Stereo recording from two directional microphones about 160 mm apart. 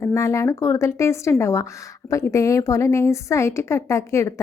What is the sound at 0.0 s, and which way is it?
A woman's voice, 20° left (ahead or behind).